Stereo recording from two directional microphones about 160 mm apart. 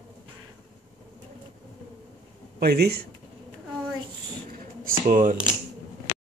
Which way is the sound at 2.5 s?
85° right.